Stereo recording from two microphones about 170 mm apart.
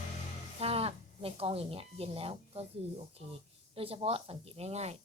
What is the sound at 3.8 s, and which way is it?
Speech, 35° right (ahead or behind).